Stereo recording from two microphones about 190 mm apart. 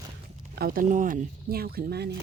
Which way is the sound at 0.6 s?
50° right (ahead or behind).